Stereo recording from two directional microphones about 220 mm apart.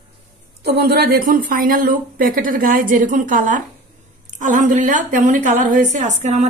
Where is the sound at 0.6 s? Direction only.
45° right (ahead or behind).